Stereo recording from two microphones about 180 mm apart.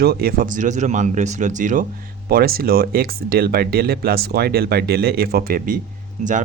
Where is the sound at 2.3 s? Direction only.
55° right (ahead or behind).